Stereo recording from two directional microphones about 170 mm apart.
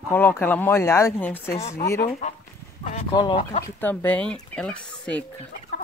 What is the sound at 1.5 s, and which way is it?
Speech, 40° left (ahead or behind).